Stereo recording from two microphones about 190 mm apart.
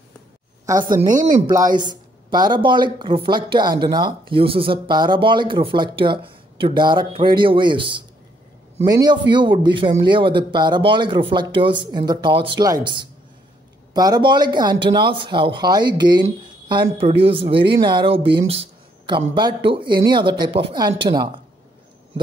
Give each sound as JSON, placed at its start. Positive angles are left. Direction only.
{"t": 0.8, "sound": "speech", "side_deg": -45}
{"t": 1.5, "sound": "speech", "side_deg": -20}